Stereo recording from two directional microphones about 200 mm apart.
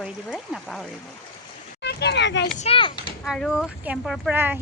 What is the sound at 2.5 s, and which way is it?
Speech, 30° left (ahead or behind).